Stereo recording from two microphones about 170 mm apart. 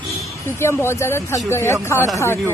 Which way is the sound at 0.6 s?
15° left (ahead or behind).